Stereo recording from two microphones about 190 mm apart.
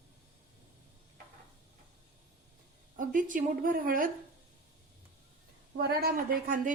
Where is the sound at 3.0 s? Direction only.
45° right (ahead or behind).